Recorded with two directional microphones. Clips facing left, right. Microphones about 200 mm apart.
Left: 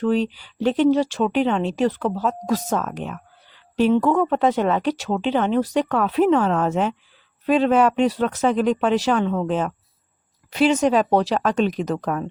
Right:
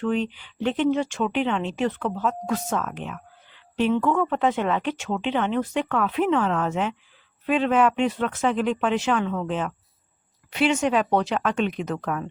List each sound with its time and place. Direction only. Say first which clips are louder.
0.0 s speech: left 4 dB; 35° left (ahead or behind)